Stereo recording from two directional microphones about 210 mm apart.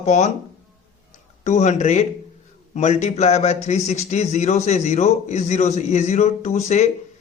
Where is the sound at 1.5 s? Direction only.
35° left (ahead or behind).